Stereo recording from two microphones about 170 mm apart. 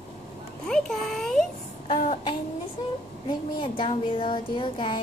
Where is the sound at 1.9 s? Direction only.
50° left (ahead or behind).